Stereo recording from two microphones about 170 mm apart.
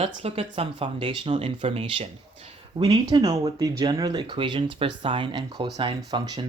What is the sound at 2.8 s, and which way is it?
Speech, 25° right (ahead or behind).